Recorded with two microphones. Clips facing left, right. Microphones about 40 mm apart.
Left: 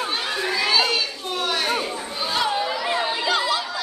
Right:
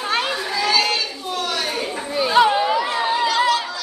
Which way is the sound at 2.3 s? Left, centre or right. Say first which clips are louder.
Right 8 dB; right.